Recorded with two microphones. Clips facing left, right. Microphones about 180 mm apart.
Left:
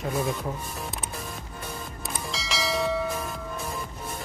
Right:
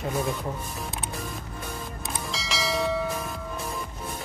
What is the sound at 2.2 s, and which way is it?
Church bell, centre (ahead or behind).